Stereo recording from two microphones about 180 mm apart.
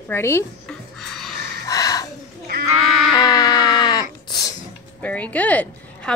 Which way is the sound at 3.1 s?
20° left (ahead or behind).